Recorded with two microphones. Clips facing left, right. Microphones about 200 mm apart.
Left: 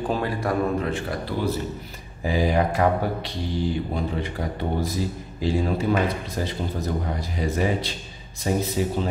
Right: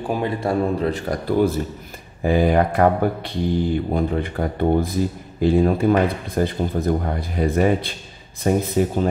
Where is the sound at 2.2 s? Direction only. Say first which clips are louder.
Right 5 dB; 55° right (ahead or behind).